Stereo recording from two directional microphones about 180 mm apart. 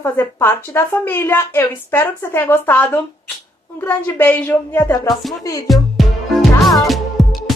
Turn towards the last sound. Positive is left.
turn(degrees=0)  # may be behind; listen again after turning